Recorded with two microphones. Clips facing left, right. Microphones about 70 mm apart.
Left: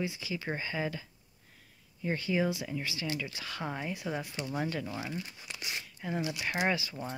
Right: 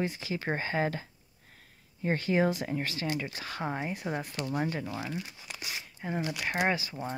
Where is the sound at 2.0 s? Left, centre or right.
Right.